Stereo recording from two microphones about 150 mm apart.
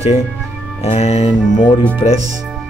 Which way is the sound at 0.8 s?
45° left (ahead or behind).